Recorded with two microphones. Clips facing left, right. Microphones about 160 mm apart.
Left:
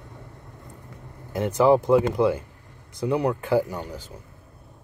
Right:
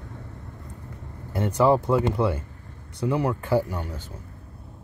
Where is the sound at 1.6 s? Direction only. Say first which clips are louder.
Left 3 dB; 15° left (ahead or behind).